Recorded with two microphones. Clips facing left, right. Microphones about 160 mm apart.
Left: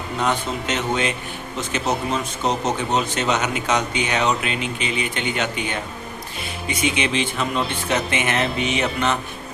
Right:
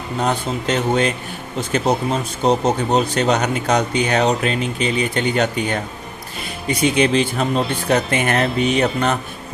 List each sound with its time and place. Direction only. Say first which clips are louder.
0.2 s speech: right 2 dB; 35° right (ahead or behind)